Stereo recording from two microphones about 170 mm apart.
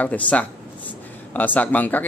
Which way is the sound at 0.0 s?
10° left (ahead or behind).